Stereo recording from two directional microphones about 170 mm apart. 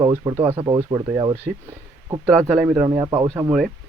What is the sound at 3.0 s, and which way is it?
Speech, 15° right (ahead or behind).